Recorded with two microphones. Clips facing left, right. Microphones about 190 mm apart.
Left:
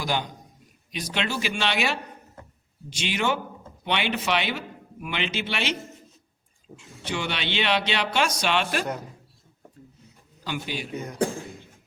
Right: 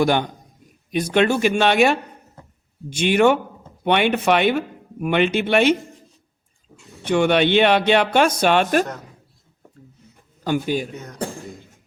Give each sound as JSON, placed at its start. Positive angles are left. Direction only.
{"t": 0.0, "sound": "speech", "side_deg": -60}
{"t": 6.7, "sound": "speech", "side_deg": -55}
{"t": 10.4, "sound": "speech", "side_deg": -45}
{"t": 10.9, "sound": "speech", "side_deg": 10}